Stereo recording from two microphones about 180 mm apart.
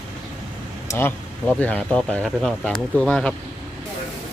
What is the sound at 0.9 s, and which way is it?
Speech, 10° left (ahead or behind).